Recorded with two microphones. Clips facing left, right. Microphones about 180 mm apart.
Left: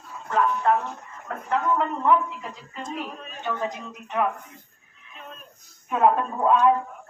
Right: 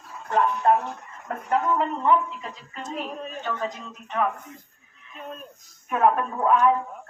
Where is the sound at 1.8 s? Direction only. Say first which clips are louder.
Even; centre (ahead or behind).